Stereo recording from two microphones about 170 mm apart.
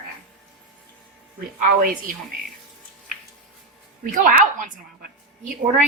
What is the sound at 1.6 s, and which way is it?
Speech, 55° right (ahead or behind).